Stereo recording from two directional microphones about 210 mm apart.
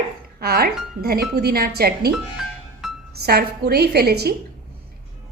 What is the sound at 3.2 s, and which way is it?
A woman's voice, 50° right (ahead or behind).